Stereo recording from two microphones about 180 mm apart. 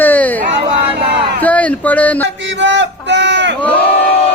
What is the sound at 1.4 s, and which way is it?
Speech, 5° left (ahead or behind).